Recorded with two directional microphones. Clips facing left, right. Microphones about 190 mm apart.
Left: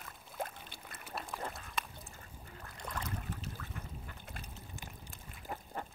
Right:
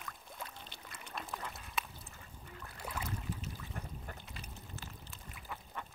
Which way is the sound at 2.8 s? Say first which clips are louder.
Even; 5° right (ahead or behind).